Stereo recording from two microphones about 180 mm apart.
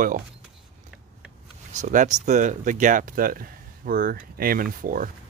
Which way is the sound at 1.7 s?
45° right (ahead or behind).